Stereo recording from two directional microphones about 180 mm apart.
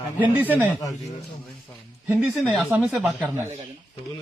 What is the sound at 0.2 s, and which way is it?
Speech, 10° right (ahead or behind).